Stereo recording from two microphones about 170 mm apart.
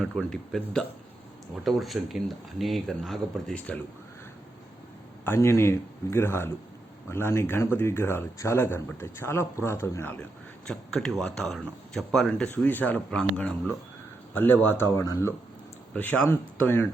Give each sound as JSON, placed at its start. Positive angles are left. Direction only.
{"t": 0.0, "sound": "speech", "side_deg": 0}
{"t": 5.2, "sound": "speech", "side_deg": 15}
{"t": 10.7, "sound": "speech", "side_deg": 0}